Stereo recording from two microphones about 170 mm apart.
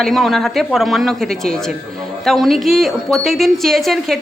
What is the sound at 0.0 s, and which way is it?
Speech, centre (ahead or behind).